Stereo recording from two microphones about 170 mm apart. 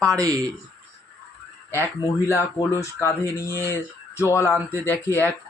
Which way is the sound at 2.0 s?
20° left (ahead or behind).